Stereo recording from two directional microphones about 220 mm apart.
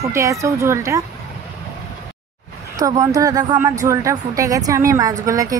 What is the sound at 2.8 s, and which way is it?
A woman's voice, 15° right (ahead or behind).